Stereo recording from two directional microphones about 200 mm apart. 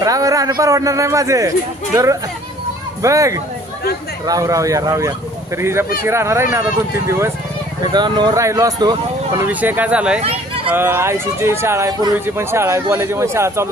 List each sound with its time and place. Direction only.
0.0 s speech: 15° right (ahead or behind)
3.0 s speech: 15° right (ahead or behind)